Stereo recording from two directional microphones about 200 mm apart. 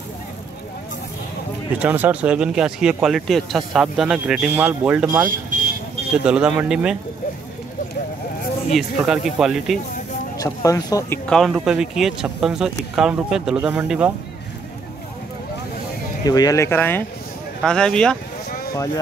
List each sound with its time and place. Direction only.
1.8 s speech: 10° right (ahead or behind)
8.7 s speech: centre (ahead or behind)
10.3 s speech: 15° left (ahead or behind)
11.2 s speech: centre (ahead or behind)
16.3 s speech: 20° left (ahead or behind)